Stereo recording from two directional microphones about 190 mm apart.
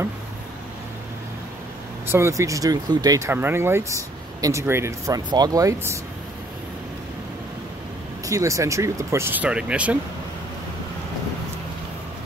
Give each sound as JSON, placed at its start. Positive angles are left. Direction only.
{"t": 2.0, "sound": "speech", "side_deg": -15}
{"t": 8.3, "sound": "speech", "side_deg": -15}